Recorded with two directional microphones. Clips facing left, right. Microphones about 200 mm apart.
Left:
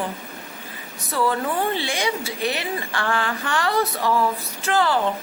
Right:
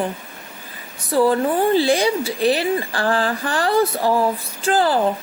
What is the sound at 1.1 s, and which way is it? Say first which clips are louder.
A woman's voice: right 6 dB; 30° right (ahead or behind).